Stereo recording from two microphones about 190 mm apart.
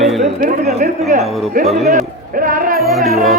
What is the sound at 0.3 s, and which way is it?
Speech, 45° right (ahead or behind).